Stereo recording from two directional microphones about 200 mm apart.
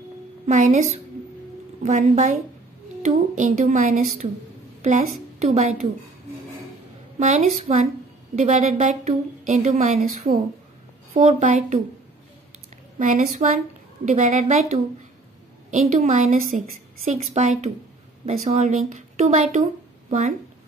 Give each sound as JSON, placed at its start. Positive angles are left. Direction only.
{"t": 0.5, "sound": "a woman's voice", "side_deg": -35}
{"t": 5.4, "sound": "a woman's voice", "side_deg": -30}
{"t": 7.2, "sound": "a woman's voice", "side_deg": -35}
{"t": 13.0, "sound": "a woman's voice", "side_deg": -40}